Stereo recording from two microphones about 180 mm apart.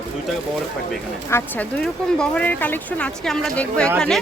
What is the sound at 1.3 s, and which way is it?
Speech, 10° left (ahead or behind).